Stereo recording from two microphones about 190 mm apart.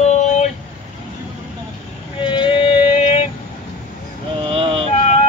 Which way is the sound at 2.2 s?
25° left (ahead or behind).